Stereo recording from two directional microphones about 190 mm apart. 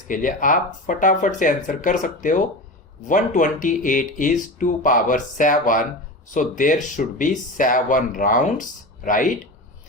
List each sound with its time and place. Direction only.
0.1 s speech: 45° left (ahead or behind)